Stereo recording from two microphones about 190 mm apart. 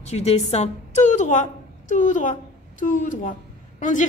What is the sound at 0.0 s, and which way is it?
A woman's voice, 35° left (ahead or behind).